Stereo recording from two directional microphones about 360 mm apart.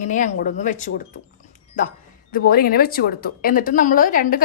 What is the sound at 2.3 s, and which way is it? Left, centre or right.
A woman's voice, left.